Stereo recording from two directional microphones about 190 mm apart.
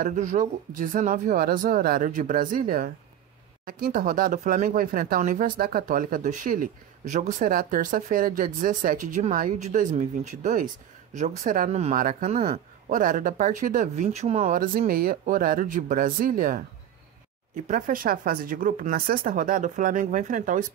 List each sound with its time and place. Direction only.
0.0 s speech: 40° right (ahead or behind)
12.4 s speech: 30° right (ahead or behind)
12.9 s speech: 45° right (ahead or behind)
17.6 s speech: 40° right (ahead or behind)